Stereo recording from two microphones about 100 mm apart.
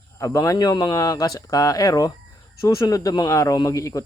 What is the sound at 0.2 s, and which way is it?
Speech, 35° left (ahead or behind).